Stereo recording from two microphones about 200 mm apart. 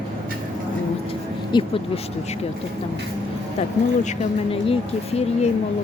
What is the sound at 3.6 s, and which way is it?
Speech, 35° left (ahead or behind).